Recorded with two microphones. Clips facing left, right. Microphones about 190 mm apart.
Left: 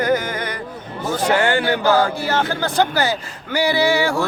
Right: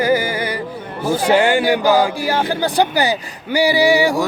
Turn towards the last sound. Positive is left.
turn(degrees=-15)  # may be behind; listen again after turning